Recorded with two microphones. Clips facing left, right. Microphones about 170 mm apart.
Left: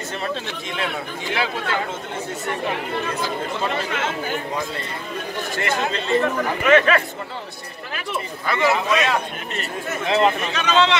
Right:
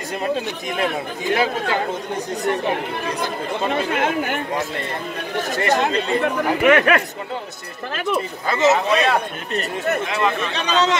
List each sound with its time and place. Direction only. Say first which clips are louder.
1.3 s speech: right 4 dB; 45° right (ahead or behind)
3.7 s speech: right 5 dB; 60° right (ahead or behind)
5.5 s speech: right 5 dB; 40° right (ahead or behind)
6.2 s speech: right 4 dB; 55° right (ahead or behind)
8.5 s speech: right 3 dB; 25° right (ahead or behind)
10.0 s speech: left 3 dB; 25° left (ahead or behind)
10.5 s speech: left 1 dB; 35° right (ahead or behind)